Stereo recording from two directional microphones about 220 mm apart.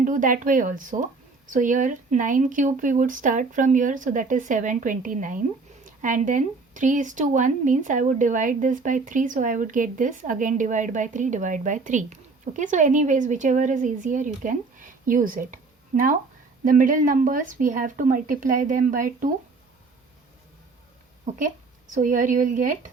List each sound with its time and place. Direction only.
0.0 s speech: 35° right (ahead or behind)
21.3 s speech: 35° right (ahead or behind)